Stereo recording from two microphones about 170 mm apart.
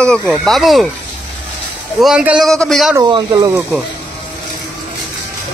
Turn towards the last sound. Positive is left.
turn(degrees=-25)  # may be behind; listen again after turning